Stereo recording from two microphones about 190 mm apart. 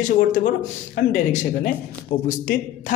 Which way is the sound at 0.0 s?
40° left (ahead or behind).